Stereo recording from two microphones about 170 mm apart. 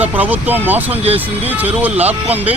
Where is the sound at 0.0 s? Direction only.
10° right (ahead or behind).